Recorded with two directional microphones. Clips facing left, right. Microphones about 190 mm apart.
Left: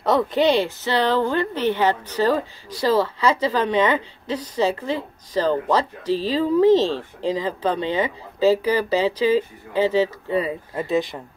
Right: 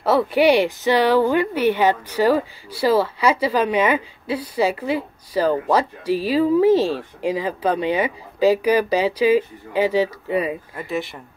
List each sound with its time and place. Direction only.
0.0 s speech: 5° right (ahead or behind)
10.8 s speech: 20° left (ahead or behind)